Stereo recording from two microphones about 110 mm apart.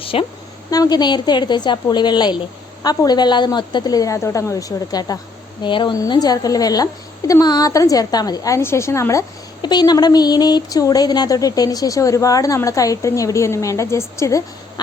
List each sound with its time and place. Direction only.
0.0 s a woman's voice: 55° left (ahead or behind)
0.7 s speech: 35° left (ahead or behind)
9.6 s speech: 40° left (ahead or behind)